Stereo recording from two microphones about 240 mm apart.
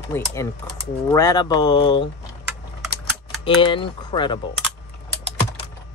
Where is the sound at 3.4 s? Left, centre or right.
Left.